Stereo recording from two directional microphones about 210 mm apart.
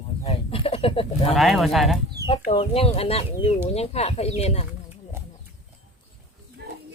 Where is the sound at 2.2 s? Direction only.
30° left (ahead or behind).